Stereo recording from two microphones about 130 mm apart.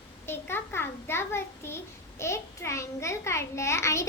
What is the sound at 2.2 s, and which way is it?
A child's voice, 20° left (ahead or behind).